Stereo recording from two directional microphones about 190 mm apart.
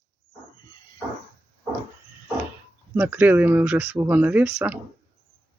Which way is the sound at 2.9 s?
10° right (ahead or behind).